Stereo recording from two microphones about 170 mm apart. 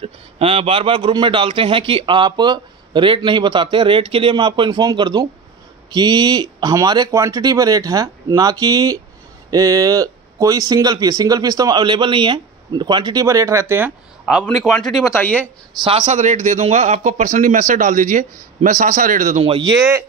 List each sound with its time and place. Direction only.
0.0 s a man's voice: 35° right (ahead or behind); by 13.9 s 15° right (ahead or behind)
14.2 s speech: centre (ahead or behind)
15.0 s speech: 10° left (ahead or behind)
16.0 s a man's voice: 45° right (ahead or behind)
19.4 s speech: 30° right (ahead or behind)
19.8 s speech: 15° right (ahead or behind)